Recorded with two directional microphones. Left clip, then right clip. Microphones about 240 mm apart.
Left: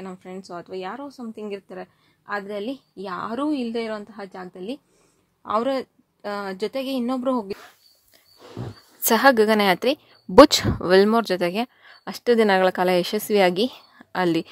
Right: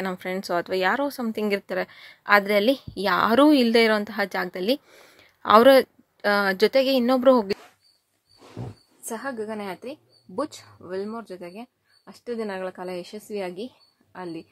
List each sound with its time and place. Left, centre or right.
0.0 s a woman's voice: centre
9.0 s a woman's voice: left